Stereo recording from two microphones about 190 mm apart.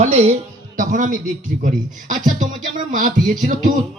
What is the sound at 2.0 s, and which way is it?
Speech, 40° right (ahead or behind).